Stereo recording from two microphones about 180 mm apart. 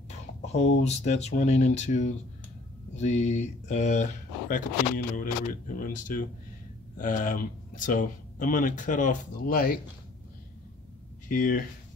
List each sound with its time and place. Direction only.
0.5 s speech: 40° left (ahead or behind); by 9.8 s 55° left (ahead or behind)
11.2 s speech: 50° left (ahead or behind)